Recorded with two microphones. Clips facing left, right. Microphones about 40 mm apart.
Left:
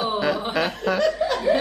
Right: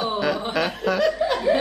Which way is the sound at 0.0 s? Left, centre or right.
Centre.